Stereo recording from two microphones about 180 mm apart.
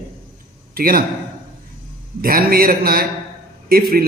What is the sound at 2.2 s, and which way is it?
A man's voice, 55° right (ahead or behind).